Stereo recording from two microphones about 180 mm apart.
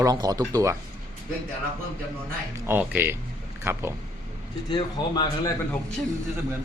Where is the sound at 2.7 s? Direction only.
10° right (ahead or behind).